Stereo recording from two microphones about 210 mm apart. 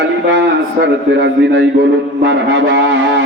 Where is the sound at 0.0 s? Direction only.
55° right (ahead or behind).